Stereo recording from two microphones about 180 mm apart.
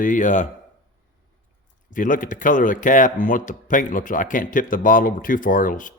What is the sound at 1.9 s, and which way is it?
Speech, 50° left (ahead or behind).